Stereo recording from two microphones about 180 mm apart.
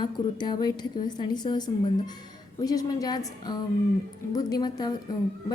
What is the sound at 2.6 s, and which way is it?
A woman's voice, 20° left (ahead or behind).